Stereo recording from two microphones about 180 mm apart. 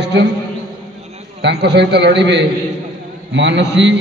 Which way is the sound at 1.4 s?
70° right (ahead or behind).